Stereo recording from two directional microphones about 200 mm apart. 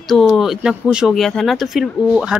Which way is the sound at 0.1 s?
Centre (ahead or behind).